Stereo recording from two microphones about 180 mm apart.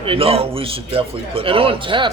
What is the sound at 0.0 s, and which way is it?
A man's voice, 30° right (ahead or behind).